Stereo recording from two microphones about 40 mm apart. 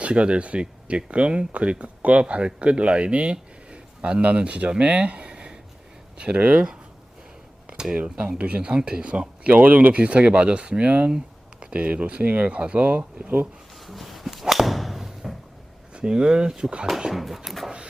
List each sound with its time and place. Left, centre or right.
0.1 s a man's voice: right
5.3 s a sound: right
6.1 s speech: right
7.7 s a sound: right
7.9 s speech: right
9.5 s speech: right
9.9 s speech: right
12.5 s speech: right
13.8 s a sound: centre
14.4 s thump: centre
16.0 s speech: right
17.1 s a sound: centre